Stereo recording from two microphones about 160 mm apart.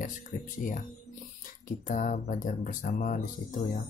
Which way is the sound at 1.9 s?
55° left (ahead or behind).